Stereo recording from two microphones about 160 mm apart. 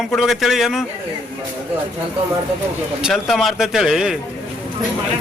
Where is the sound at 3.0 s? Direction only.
Centre (ahead or behind).